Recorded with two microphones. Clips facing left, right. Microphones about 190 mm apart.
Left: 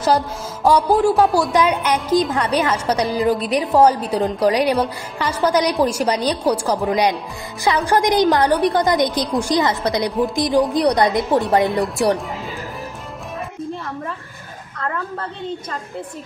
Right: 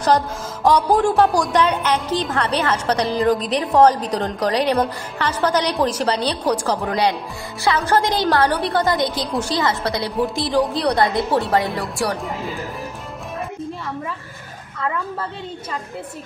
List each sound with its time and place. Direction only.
0.7 s a woman's voice: 5° left (ahead or behind)